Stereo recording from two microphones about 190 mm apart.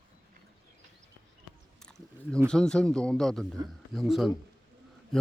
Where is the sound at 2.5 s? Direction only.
5° left (ahead or behind).